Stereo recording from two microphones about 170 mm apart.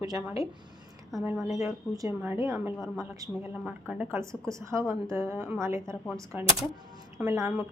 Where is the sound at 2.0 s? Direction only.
15° right (ahead or behind).